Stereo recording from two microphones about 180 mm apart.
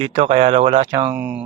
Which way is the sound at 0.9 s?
15° right (ahead or behind).